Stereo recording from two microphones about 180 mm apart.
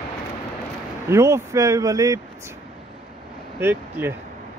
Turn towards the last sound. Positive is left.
turn(degrees=-15)  # may be behind; listen again after turning